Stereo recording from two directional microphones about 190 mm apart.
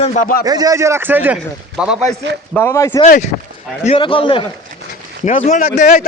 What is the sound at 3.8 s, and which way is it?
Speech, 30° left (ahead or behind).